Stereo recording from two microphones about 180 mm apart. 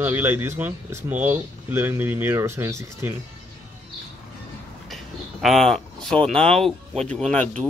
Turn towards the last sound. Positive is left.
turn(degrees=5)  # may be behind; listen again after turning